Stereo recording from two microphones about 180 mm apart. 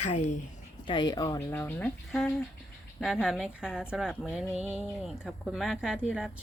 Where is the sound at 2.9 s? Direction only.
Centre (ahead or behind).